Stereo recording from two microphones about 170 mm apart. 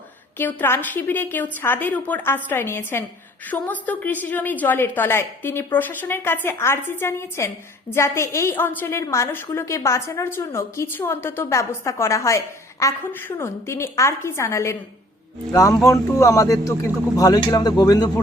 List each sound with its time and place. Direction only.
0.3 s a woman's voice: 10° left (ahead or behind)